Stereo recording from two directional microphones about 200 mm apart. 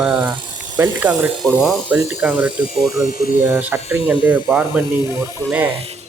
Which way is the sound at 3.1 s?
45° left (ahead or behind).